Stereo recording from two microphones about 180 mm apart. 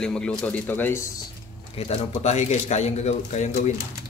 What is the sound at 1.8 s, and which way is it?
Speech, 35° left (ahead or behind).